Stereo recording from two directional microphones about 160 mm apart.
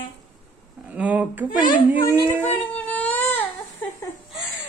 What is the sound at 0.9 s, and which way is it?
Speech, 10° right (ahead or behind).